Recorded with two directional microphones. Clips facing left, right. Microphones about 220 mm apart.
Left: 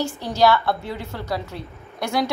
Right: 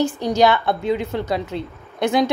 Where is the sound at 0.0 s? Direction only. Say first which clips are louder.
Right 3 dB; 15° right (ahead or behind).